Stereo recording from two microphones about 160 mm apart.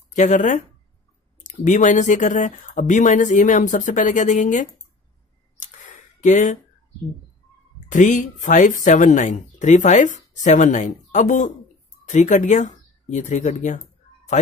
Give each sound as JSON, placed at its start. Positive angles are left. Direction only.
{"t": 0.1, "sound": "speech", "side_deg": 50}
{"t": 5.6, "sound": "a sound", "side_deg": 50}
{"t": 7.9, "sound": "speech", "side_deg": 55}